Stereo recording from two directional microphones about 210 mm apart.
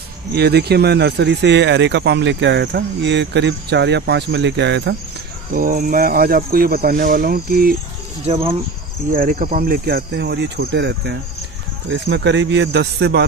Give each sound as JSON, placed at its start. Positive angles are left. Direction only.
{"t": 0.3, "sound": "speech", "side_deg": -50}
{"t": 5.5, "sound": "speech", "side_deg": -40}
{"t": 8.3, "sound": "speech", "side_deg": -25}
{"t": 9.1, "sound": "speech", "side_deg": -40}